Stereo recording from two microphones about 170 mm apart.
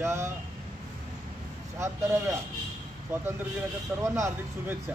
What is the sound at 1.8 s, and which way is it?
Speech, 15° right (ahead or behind).